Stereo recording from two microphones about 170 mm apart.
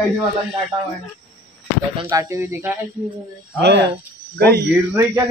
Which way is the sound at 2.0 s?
20° right (ahead or behind).